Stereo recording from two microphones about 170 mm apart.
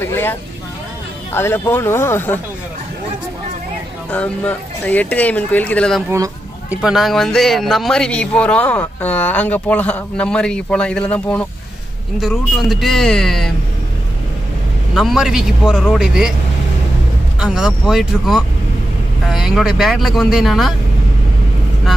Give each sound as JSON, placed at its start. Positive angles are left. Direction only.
{"t": 0.0, "sound": "speech", "side_deg": 15}
{"t": 4.1, "sound": "speech", "side_deg": 10}
{"t": 6.0, "sound": "speech", "side_deg": -20}
{"t": 6.8, "sound": "speech", "side_deg": 0}
{"t": 15.0, "sound": "speech", "side_deg": 0}
{"t": 17.4, "sound": "speech", "side_deg": -5}
{"t": 19.2, "sound": "vehicle", "side_deg": 0}
{"t": 19.8, "sound": "speech", "side_deg": 0}